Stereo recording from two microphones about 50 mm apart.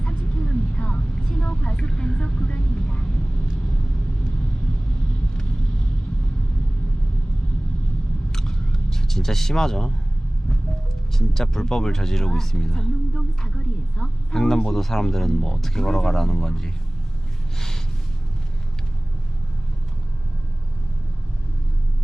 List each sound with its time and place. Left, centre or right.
0.0 s vehicle: centre
1.2 s vehicle: centre
8.3 s vehicle: centre
11.1 s speech: centre